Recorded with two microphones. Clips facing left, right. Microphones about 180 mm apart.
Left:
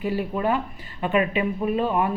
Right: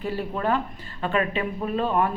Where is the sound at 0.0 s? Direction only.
15° left (ahead or behind).